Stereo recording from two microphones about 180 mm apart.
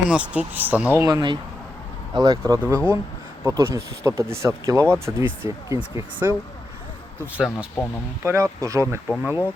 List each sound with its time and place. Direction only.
0.1 s speech: 5° right (ahead or behind)
7.3 s speech: 5° right (ahead or behind)